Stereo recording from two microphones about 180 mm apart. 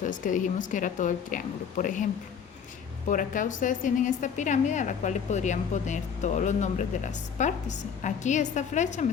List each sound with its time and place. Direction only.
0.0 s a woman's voice: 45° left (ahead or behind)
3.1 s a woman's voice: 45° left (ahead or behind)